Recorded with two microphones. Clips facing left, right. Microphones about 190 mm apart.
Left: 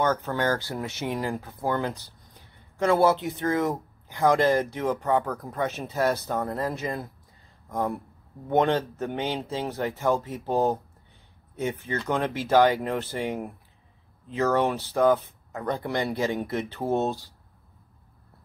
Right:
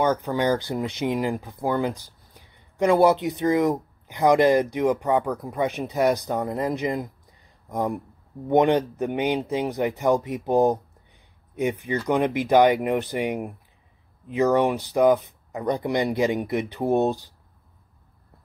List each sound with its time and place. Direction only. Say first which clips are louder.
0.0 s speech: right 3 dB; 15° right (ahead or behind)